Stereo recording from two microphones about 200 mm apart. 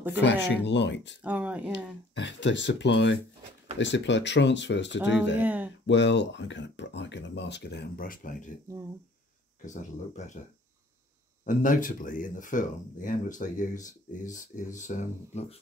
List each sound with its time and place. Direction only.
0.2 s speech: 60° left (ahead or behind)
1.2 s speech: 5° right (ahead or behind)
1.7 s speech: 65° left (ahead or behind)
5.4 s speech: 10° right (ahead or behind)
5.9 s speech: 60° left (ahead or behind); by 8.5 s 40° left (ahead or behind)
9.7 s speech: 40° left (ahead or behind)
11.4 s speech: 40° left (ahead or behind)